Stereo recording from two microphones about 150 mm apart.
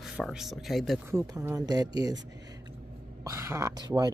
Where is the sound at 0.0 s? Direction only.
Centre (ahead or behind).